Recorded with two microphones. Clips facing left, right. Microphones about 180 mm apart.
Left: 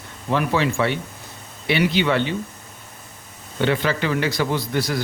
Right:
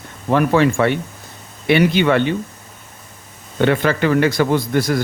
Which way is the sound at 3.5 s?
55° right (ahead or behind).